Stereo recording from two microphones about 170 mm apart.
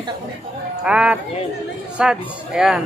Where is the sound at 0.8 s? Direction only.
5° right (ahead or behind).